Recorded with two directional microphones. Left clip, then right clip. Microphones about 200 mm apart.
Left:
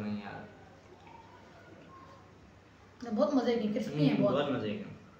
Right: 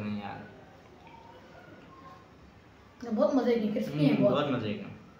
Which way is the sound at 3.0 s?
15° left (ahead or behind).